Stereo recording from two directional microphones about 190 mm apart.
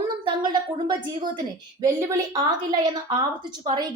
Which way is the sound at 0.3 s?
25° right (ahead or behind).